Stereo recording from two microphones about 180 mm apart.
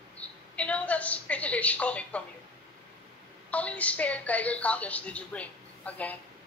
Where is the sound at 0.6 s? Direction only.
5° left (ahead or behind).